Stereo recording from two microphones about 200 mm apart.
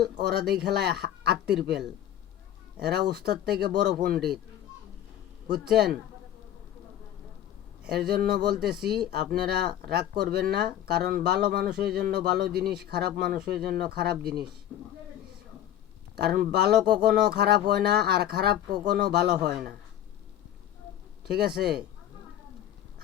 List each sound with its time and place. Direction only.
0.0 s speech: 55° right (ahead or behind)
2.8 s speech: 55° right (ahead or behind)
5.7 s speech: 55° right (ahead or behind)
7.9 s speech: 55° right (ahead or behind)
16.1 s speech: 55° right (ahead or behind)
21.2 s speech: 50° right (ahead or behind)